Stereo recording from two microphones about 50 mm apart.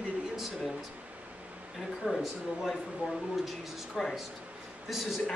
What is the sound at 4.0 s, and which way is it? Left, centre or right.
Speech, centre.